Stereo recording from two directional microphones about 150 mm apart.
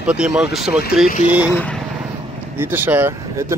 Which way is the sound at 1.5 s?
10° left (ahead or behind).